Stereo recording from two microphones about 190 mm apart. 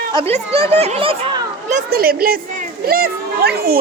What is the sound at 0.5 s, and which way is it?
Children playing, 35° right (ahead or behind).